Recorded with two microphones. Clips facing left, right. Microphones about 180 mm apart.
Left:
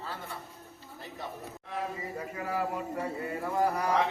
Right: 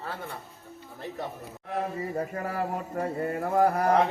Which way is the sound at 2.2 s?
50° right (ahead or behind).